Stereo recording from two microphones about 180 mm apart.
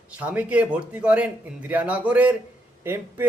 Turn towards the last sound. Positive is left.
turn(degrees=-10)  # may be behind; listen again after turning